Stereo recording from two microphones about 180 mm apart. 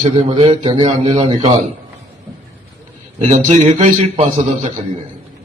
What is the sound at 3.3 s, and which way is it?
A man's voice, 40° right (ahead or behind).